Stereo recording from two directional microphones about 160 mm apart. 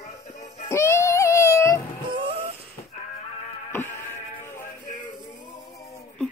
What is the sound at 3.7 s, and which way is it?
Music, 15° left (ahead or behind).